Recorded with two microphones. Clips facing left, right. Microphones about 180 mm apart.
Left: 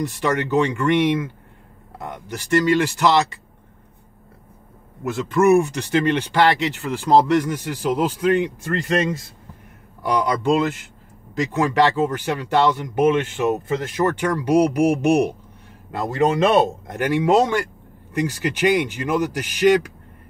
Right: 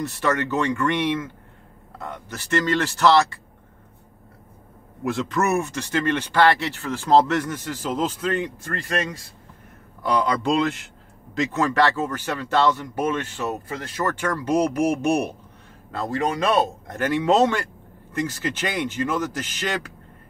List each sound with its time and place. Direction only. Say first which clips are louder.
0.0 s speech: left 2 dB; 15° left (ahead or behind)
5.0 s speech: left 6 dB; 5° left (ahead or behind)
10.0 s speech: left 2 dB; 10° left (ahead or behind)